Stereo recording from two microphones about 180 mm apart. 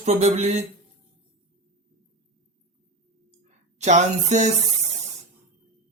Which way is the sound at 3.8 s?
40° right (ahead or behind).